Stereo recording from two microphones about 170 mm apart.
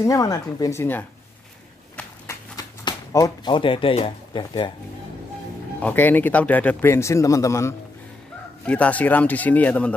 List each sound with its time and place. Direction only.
0.0 s speech: 20° left (ahead or behind)
2.5 s speech: 20° left (ahead or behind)
5.8 s speech: 10° left (ahead or behind)